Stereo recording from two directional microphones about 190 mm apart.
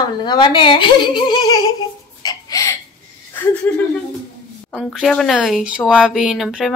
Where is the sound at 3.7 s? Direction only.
10° left (ahead or behind).